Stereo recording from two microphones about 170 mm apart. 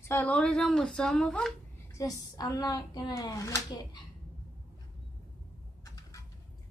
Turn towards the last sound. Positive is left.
turn(degrees=20)  # may be behind; listen again after turning